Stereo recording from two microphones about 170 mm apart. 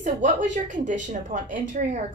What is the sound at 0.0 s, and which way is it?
A woman's voice, 45° right (ahead or behind).